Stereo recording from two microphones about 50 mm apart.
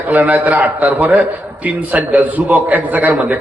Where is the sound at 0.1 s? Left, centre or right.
Right.